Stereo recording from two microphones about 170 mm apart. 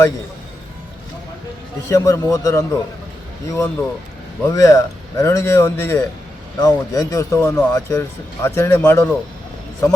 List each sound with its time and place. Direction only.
1.9 s speech: 20° left (ahead or behind)